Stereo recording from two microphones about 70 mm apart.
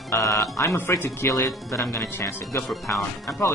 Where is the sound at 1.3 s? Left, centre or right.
Left.